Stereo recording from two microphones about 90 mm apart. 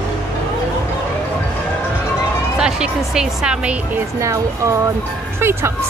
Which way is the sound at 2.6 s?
5° right (ahead or behind).